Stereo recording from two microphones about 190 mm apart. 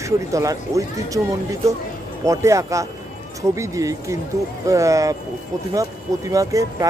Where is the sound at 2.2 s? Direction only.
15° right (ahead or behind).